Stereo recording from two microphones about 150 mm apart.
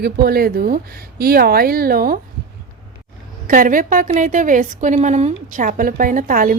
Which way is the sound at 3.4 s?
65° right (ahead or behind).